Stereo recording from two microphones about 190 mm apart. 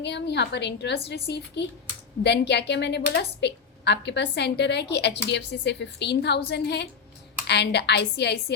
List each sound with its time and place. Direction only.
0.0 s a woman's voice: 65° left (ahead or behind)